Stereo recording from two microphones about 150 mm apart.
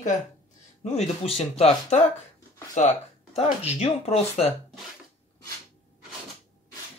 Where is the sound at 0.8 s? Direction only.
45° left (ahead or behind).